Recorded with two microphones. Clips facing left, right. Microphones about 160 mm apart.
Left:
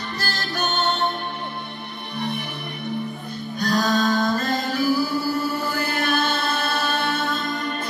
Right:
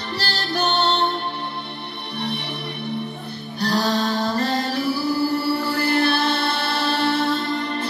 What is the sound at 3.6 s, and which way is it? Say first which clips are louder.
Music: even; 35° right (ahead or behind).